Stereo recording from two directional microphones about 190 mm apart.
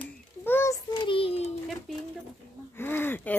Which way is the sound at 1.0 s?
30° left (ahead or behind).